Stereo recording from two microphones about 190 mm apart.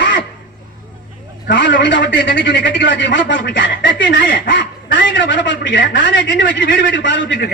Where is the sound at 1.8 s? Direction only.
75° left (ahead or behind).